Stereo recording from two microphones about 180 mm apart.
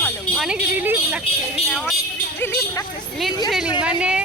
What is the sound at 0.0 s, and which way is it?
Speech, centre (ahead or behind).